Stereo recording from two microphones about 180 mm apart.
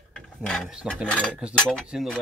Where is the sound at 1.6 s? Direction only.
5° left (ahead or behind).